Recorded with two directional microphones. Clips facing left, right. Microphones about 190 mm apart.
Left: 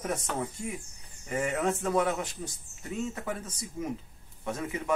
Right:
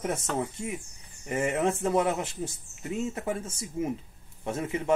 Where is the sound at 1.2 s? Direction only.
25° right (ahead or behind).